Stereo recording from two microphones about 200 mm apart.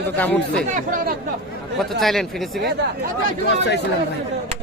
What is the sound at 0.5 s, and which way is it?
Speech, 45° right (ahead or behind).